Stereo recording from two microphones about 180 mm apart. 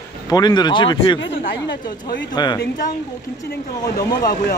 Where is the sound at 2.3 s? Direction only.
25° left (ahead or behind).